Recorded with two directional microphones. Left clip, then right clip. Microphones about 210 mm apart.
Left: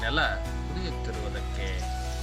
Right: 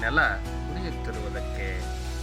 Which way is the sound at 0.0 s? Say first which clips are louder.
Right 4 dB; centre (ahead or behind).